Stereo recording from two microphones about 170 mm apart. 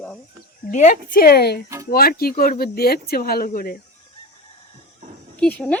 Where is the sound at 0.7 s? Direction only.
45° left (ahead or behind).